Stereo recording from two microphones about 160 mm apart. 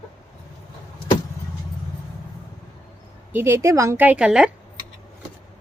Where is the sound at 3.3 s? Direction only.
15° right (ahead or behind).